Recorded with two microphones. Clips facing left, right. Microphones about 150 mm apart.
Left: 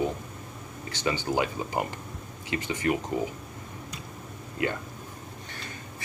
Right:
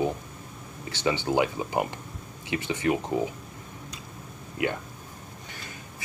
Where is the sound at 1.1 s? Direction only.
20° right (ahead or behind).